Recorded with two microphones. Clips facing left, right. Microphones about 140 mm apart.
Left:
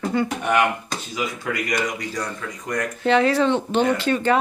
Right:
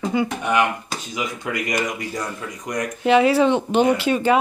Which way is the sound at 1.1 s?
20° right (ahead or behind).